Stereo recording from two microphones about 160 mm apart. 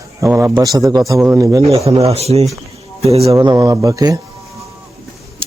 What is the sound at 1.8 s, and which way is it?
Speech, 40° right (ahead or behind).